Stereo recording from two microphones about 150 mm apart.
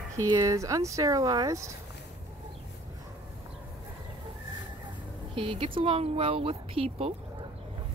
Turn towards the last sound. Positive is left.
turn(degrees=-40)  # may be behind; listen again after turning